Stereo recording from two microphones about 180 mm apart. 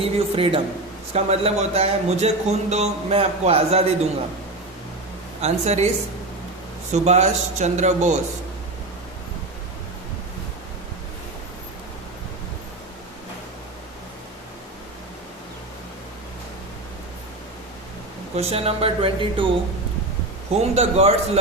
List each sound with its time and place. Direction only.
0.0 s speech: 30° right (ahead or behind)
5.4 s speech: 35° right (ahead or behind)
6.9 s speech: 40° right (ahead or behind)
18.3 s speech: 35° right (ahead or behind)
20.6 s speech: 35° right (ahead or behind)